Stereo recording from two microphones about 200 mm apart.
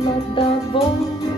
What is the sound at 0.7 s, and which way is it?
Music, 25° left (ahead or behind).